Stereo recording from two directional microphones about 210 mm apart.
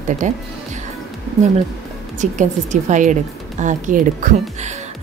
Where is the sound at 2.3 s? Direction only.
35° right (ahead or behind).